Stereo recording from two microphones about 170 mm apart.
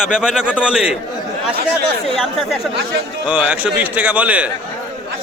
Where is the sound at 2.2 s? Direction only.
Centre (ahead or behind).